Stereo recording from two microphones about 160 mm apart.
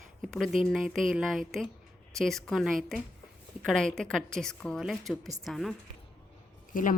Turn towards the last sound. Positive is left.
turn(degrees=60)  # may be behind; listen again after turning